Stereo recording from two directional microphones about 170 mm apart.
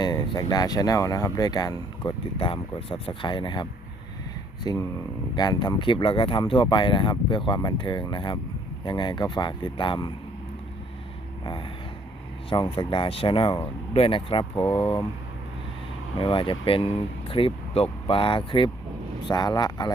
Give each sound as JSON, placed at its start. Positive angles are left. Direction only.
{"t": 0.0, "sound": "speech", "side_deg": 25}
{"t": 12.5, "sound": "speech", "side_deg": 30}
{"t": 16.2, "sound": "speech", "side_deg": 30}